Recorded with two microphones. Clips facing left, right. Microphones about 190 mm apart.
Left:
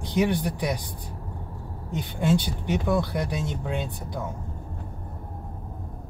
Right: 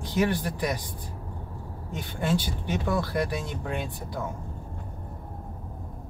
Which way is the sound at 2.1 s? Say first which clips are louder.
Left 3 dB; 15° left (ahead or behind).